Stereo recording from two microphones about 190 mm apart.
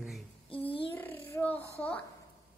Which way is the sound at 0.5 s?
30° left (ahead or behind).